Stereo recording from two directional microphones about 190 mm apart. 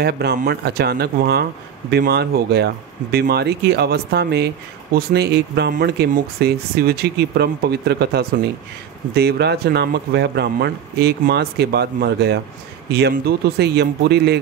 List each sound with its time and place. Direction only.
0.0 s speech: 60° right (ahead or behind)
13.6 s speech: 60° right (ahead or behind)